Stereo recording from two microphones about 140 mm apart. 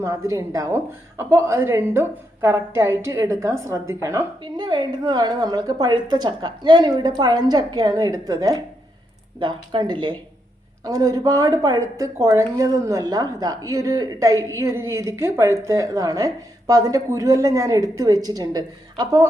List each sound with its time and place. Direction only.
0.0 s a woman's voice: 25° right (ahead or behind)
4.5 s a woman's voice: 30° right (ahead or behind)